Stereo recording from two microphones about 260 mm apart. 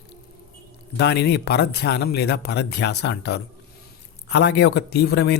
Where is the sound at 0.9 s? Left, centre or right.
Left.